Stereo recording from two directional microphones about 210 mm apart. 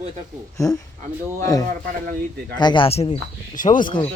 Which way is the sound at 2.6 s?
20° left (ahead or behind).